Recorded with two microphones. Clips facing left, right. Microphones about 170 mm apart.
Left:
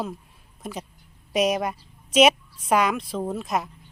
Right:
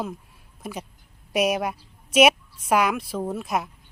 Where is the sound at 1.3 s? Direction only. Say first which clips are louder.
Even; 5° right (ahead or behind).